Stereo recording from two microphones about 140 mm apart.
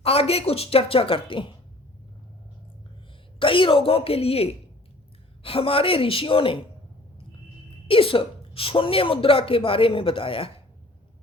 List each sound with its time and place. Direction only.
0.0 s a woman's voice: 45° left (ahead or behind)
3.3 s speech: 40° left (ahead or behind)
7.9 s speech: 40° left (ahead or behind)